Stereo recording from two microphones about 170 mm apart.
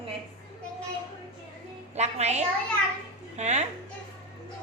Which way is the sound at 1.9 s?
40° right (ahead or behind).